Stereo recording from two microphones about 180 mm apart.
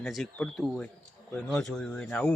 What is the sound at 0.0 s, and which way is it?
Speech, 5° left (ahead or behind).